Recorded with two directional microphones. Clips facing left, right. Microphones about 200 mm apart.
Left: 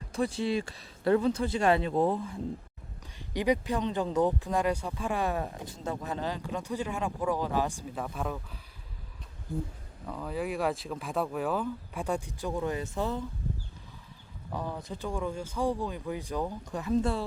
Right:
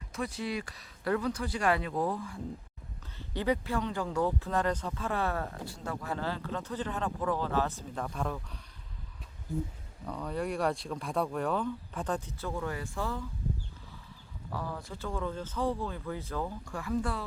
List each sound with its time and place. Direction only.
0.1 s speech: 30° left (ahead or behind); by 8.5 s 5° left (ahead or behind)
10.1 s speech: 5° left (ahead or behind); by 13.2 s 20° left (ahead or behind)
14.5 s speech: 20° left (ahead or behind)